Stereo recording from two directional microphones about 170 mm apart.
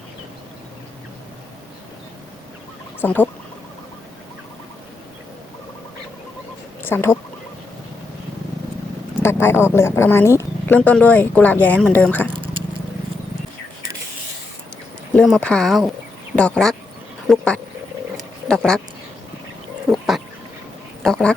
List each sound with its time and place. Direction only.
3.0 s speech: 10° left (ahead or behind)
6.8 s speech: 15° left (ahead or behind)
9.2 s speech: 15° left (ahead or behind)
15.1 s speech: 5° left (ahead or behind)
17.2 s a sound: 5° left (ahead or behind)
18.4 s speech: 5° left (ahead or behind)
19.9 s a sound: centre (ahead or behind)
21.0 s speech: 5° left (ahead or behind)